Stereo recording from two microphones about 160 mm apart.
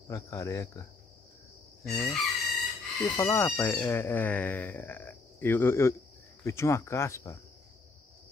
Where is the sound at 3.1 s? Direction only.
15° left (ahead or behind).